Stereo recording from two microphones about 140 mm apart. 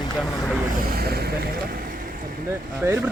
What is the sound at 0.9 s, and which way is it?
Speech, 90° right.